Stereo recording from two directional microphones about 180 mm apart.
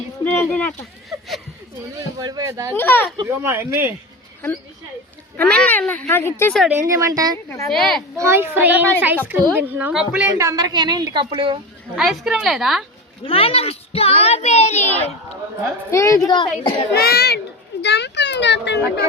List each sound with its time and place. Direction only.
0.3 s speech: 10° left (ahead or behind)
1.1 s a woman's voice: 20° right (ahead or behind)
2.7 s speech: 10° left (ahead or behind)
3.2 s speech: 15° right (ahead or behind)
5.4 s speech: 10° left (ahead or behind)
6.6 s speech: 10° right (ahead or behind)
7.7 s a woman's voice: 5° left (ahead or behind)
8.2 s speech: 15° right (ahead or behind)
10.3 s a woman's voice: 20° right (ahead or behind)
11.9 s a woman's voice: 5° right (ahead or behind)
13.2 s a child's voice: 30° left (ahead or behind)
15.9 s speech: 15° left (ahead or behind)
16.9 s a child's voice: 60° left (ahead or behind)
17.8 s a sound: 70° left (ahead or behind)